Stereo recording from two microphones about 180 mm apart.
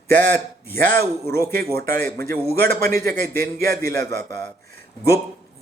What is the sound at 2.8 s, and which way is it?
A man's voice, 15° left (ahead or behind).